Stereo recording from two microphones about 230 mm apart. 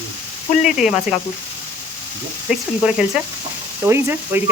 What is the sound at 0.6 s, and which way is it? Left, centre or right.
Speech, centre.